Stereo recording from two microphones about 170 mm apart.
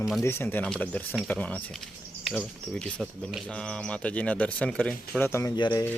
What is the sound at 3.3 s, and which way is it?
Speech, 5° left (ahead or behind).